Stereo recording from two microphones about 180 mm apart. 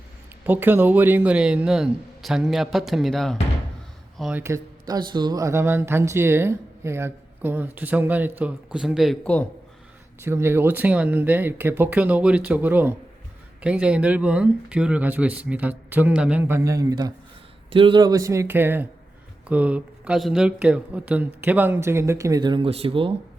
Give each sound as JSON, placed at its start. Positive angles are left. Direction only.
{"t": 0.4, "sound": "speech", "side_deg": -10}
{"t": 4.4, "sound": "speech", "side_deg": -20}
{"t": 10.2, "sound": "speech", "side_deg": -15}
{"t": 17.7, "sound": "speech", "side_deg": -30}